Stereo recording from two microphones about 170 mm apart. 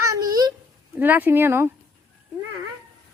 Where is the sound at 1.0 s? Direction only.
10° right (ahead or behind).